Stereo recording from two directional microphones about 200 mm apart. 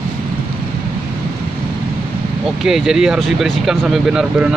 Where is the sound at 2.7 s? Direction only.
5° right (ahead or behind).